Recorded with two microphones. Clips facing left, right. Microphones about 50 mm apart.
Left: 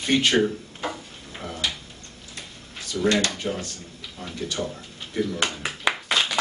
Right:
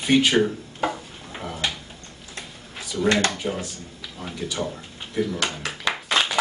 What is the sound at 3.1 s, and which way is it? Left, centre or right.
Speech, right.